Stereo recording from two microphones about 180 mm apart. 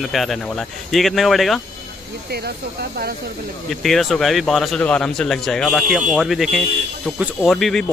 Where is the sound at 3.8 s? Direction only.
Centre (ahead or behind).